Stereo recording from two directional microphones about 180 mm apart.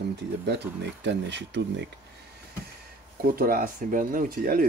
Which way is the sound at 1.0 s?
80° right.